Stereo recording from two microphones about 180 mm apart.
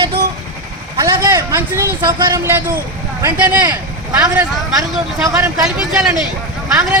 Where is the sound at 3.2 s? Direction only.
10° right (ahead or behind).